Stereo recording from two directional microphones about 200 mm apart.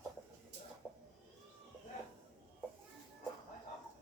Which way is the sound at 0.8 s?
5° right (ahead or behind).